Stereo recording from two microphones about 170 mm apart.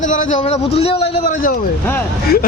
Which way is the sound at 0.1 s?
45° left (ahead or behind).